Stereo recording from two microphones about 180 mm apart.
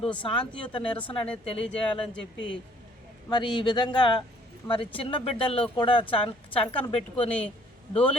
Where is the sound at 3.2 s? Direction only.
25° left (ahead or behind).